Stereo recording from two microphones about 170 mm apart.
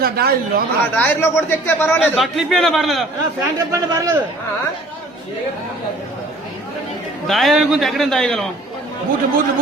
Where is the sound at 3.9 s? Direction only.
20° right (ahead or behind).